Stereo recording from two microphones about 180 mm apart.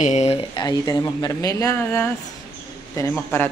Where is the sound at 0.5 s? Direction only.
20° left (ahead or behind).